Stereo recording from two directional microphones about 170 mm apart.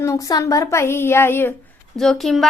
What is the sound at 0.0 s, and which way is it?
A woman's voice, 20° left (ahead or behind).